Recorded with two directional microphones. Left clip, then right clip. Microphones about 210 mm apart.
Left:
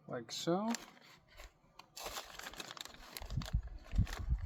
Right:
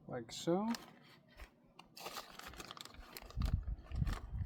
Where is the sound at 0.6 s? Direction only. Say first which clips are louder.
Left 2 dB; 25° left (ahead or behind).